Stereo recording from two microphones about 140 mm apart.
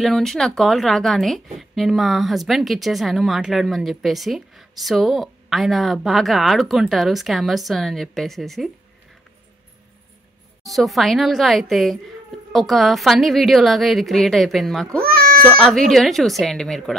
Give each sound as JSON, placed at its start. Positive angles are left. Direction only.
{"t": 0.0, "sound": "a woman's voice", "side_deg": 0}
{"t": 10.6, "sound": "a woman's voice", "side_deg": 0}
{"t": 15.0, "sound": "meow", "side_deg": -90}
{"t": 15.4, "sound": "a woman's voice", "side_deg": 5}